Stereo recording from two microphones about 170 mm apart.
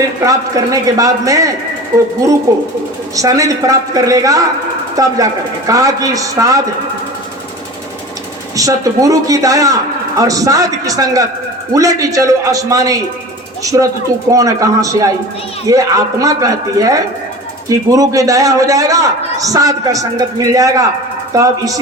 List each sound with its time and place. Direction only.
0.3 s a man's voice: 20° right (ahead or behind)
8.5 s a man's voice: 20° right (ahead or behind)